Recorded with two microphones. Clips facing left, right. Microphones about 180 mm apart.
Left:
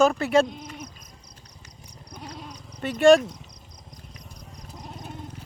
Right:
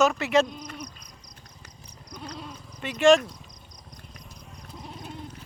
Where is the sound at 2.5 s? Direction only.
45° left (ahead or behind).